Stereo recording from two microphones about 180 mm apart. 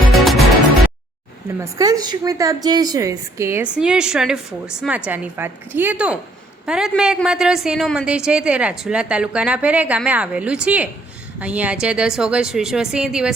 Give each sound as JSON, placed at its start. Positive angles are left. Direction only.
{"t": 1.5, "sound": "speech", "side_deg": -20}
{"t": 3.8, "sound": "a woman's voice", "side_deg": -5}